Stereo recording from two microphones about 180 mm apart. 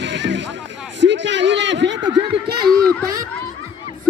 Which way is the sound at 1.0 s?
85° right.